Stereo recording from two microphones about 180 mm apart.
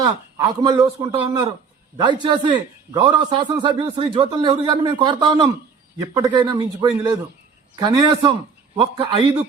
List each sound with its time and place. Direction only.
0.0 s a man's voice: 20° right (ahead or behind)